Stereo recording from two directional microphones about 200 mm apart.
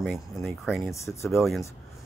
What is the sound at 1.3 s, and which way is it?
Speech, centre (ahead or behind).